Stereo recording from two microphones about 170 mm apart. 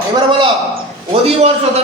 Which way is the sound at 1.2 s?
35° right (ahead or behind).